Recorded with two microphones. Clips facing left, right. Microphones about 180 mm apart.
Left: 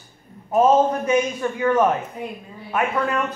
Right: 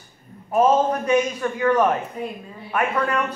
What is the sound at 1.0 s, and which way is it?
Speech, 15° left (ahead or behind).